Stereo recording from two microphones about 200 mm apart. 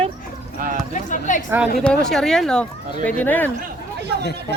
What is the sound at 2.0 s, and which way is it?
Speech, centre (ahead or behind).